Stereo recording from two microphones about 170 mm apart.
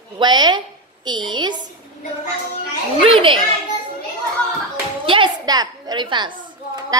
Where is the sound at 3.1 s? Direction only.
30° right (ahead or behind).